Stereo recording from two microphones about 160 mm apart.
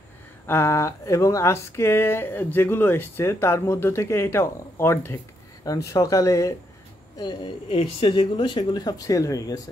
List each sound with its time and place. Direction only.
0.5 s speech: 15° left (ahead or behind)